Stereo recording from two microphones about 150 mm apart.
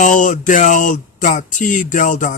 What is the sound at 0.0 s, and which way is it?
Speech, 60° left (ahead or behind).